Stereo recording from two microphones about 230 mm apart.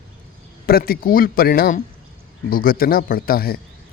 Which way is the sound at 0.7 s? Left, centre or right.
Left.